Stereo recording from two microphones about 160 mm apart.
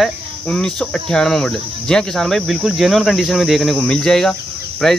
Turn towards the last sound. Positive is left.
turn(degrees=5)  # may be behind; listen again after turning